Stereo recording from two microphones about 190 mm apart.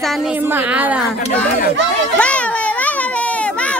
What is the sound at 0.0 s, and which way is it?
A woman's voice, centre (ahead or behind).